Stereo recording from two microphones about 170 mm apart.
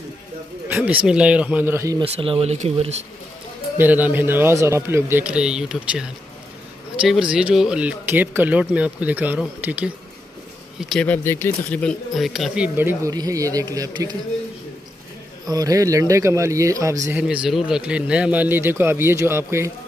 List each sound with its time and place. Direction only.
0.7 s speech: 10° right (ahead or behind)
2.0 s speech: 35° right (ahead or behind)
3.7 s speech: 10° right (ahead or behind)
10.8 s speech: 5° left (ahead or behind); by 14.1 s 25° right (ahead or behind)
15.4 s speech: 20° right (ahead or behind)
17.2 s speech: 5° right (ahead or behind)